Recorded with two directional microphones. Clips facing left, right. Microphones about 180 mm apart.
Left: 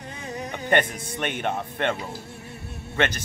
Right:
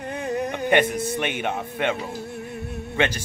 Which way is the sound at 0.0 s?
60° right (ahead or behind).